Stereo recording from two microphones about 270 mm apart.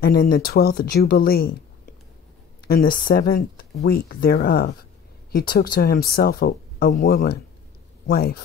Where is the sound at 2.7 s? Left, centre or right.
Left.